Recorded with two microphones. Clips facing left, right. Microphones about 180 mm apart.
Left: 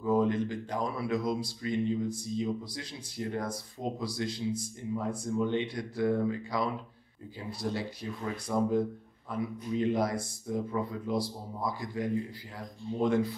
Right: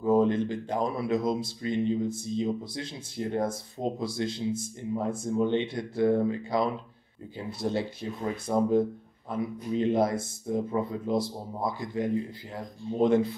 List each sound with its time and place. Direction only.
0.0 s speech: 25° right (ahead or behind)